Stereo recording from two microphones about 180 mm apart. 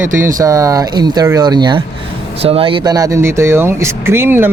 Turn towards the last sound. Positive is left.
turn(degrees=-10)  # may be behind; listen again after turning